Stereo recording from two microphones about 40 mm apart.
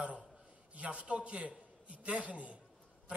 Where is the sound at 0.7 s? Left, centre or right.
Right.